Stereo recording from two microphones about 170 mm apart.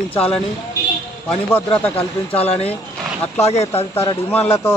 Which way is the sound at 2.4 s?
35° left (ahead or behind).